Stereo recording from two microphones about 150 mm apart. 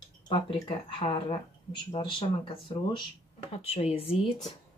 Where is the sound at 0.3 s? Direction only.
35° left (ahead or behind).